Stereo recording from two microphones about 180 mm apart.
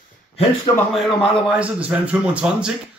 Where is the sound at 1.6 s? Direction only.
5° right (ahead or behind).